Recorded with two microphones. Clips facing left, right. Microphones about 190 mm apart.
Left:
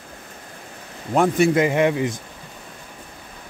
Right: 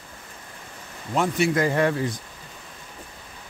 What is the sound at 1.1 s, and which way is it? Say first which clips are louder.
Speech: left 5 dB; 50° left (ahead or behind).